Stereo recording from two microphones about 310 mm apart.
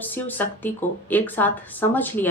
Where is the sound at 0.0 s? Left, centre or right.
Centre.